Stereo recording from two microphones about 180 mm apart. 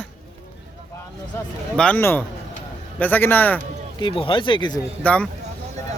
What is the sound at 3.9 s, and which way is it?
Speech, 30° left (ahead or behind).